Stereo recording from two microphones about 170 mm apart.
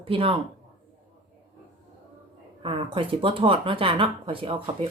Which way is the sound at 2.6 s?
30° right (ahead or behind).